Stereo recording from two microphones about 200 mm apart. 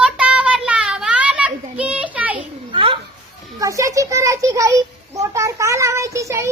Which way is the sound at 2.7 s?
25° right (ahead or behind).